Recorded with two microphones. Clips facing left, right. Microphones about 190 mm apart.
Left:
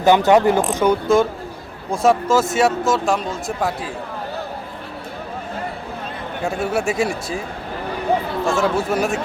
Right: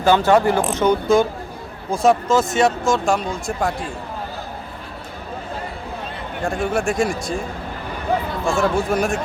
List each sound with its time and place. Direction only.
0.0 s speech: 15° left (ahead or behind)
1.0 s speech: centre (ahead or behind)
6.4 s speech: 5° left (ahead or behind)
8.4 s speech: 5° left (ahead or behind)